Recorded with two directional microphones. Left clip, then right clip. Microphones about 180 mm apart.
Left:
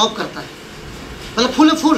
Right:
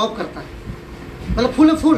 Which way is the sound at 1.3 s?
50° left (ahead or behind).